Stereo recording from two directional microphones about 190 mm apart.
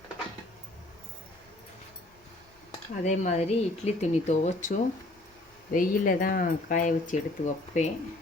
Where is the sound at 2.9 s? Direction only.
40° left (ahead or behind).